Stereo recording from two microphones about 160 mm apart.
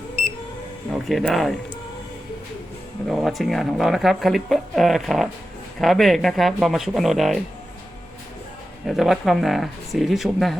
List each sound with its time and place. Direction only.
0.9 s speech: centre (ahead or behind)
3.1 s speech: centre (ahead or behind)
8.9 s speech: centre (ahead or behind)